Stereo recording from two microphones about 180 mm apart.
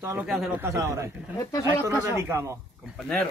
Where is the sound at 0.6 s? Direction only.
15° right (ahead or behind).